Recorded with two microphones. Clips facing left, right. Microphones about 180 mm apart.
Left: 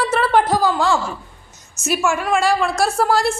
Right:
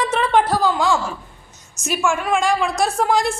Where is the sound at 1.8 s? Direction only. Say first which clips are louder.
Left 1 dB; 5° left (ahead or behind).